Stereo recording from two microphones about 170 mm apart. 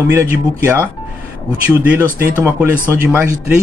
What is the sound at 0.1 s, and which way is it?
Speech, 15° right (ahead or behind).